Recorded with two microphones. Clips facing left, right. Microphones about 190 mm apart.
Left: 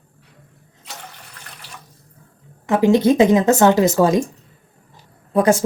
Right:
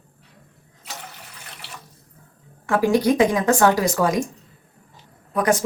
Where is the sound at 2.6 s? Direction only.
20° left (ahead or behind).